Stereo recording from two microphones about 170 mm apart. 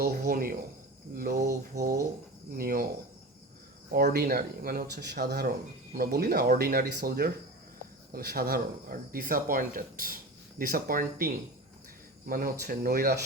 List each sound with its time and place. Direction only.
0.0 s a sound: 60° right (ahead or behind)
1.1 s speech: 55° right (ahead or behind)
2.6 s speech: 60° right (ahead or behind)
4.1 s speech: 65° right (ahead or behind)